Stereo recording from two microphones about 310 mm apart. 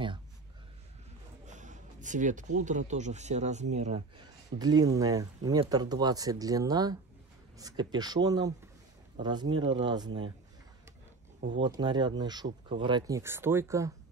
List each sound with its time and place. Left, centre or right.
1.4 s speech: right
11.4 s speech: centre